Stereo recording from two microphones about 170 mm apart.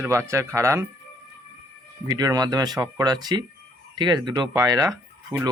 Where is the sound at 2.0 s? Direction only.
20° right (ahead or behind).